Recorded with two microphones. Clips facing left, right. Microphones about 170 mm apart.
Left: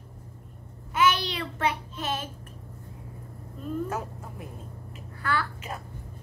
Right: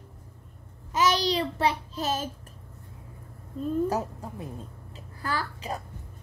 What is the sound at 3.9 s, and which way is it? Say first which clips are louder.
Speech: right 4 dB; 35° right (ahead or behind).